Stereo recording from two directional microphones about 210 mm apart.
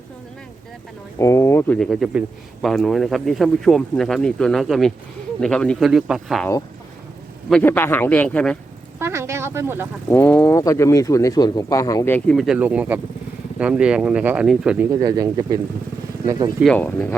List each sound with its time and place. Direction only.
1.2 s speech: 15° left (ahead or behind)
7.5 s speech: 10° left (ahead or behind)
9.0 s speech: 10° right (ahead or behind)
10.1 s speech: 10° left (ahead or behind)
15.0 s speech: 20° right (ahead or behind)
16.6 s speech: 5° left (ahead or behind)